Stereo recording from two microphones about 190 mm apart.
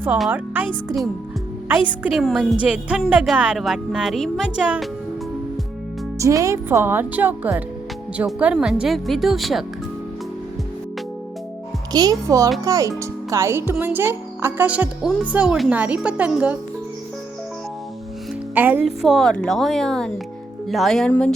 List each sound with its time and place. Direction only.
0.0 s a woman's voice: 10° right (ahead or behind)
6.1 s a woman's voice: 15° right (ahead or behind); by 9.6 s centre (ahead or behind)
11.9 s a child's voice: 20° right (ahead or behind)
18.5 s a woman's voice: 10° right (ahead or behind)